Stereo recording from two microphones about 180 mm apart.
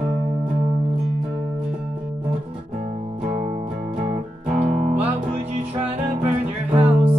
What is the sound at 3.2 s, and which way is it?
Music, 40° right (ahead or behind).